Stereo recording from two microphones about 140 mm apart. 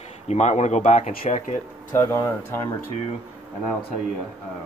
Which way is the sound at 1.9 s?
25° left (ahead or behind).